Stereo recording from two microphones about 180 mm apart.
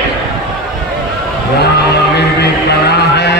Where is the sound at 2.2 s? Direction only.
65° left (ahead or behind).